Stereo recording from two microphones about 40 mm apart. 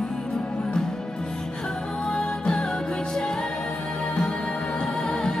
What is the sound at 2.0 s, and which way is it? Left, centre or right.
Music, left.